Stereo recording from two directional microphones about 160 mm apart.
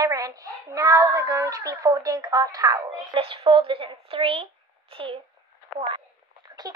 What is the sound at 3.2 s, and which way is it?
Speech, 35° right (ahead or behind).